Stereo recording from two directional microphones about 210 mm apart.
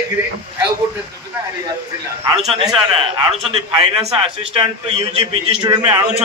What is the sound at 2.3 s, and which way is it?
A man's voice, 30° right (ahead or behind).